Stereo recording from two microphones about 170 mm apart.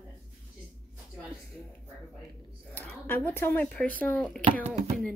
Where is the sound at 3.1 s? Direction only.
10° left (ahead or behind).